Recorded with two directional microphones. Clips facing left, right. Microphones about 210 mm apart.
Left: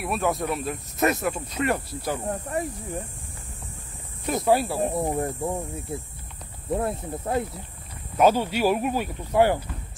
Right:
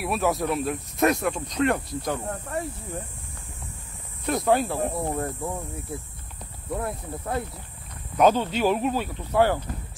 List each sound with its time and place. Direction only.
0.0 s speech: centre (ahead or behind)
2.2 s speech: 15° left (ahead or behind)
4.3 s speech: 5° left (ahead or behind); by 7.4 s 25° left (ahead or behind)
8.2 s speech: 10° left (ahead or behind)